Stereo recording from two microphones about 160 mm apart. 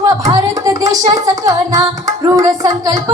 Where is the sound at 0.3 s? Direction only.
20° right (ahead or behind).